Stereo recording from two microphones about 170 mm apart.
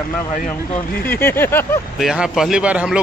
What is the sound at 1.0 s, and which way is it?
Speech, 10° left (ahead or behind).